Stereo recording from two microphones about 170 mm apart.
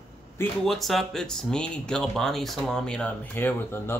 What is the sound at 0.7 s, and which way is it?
Speech, centre (ahead or behind).